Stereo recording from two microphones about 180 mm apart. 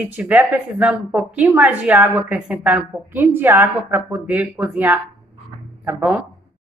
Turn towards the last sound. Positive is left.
turn(degrees=-5)  # may be behind; listen again after turning